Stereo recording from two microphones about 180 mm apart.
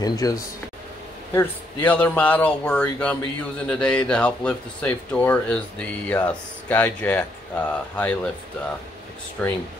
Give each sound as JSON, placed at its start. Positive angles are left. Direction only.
{"t": 0.0, "sound": "speech", "side_deg": 20}
{"t": 1.3, "sound": "speech", "side_deg": 10}
{"t": 9.4, "sound": "speech", "side_deg": 5}